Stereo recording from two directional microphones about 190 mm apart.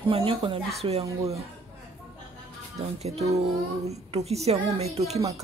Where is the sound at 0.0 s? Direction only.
30° right (ahead or behind).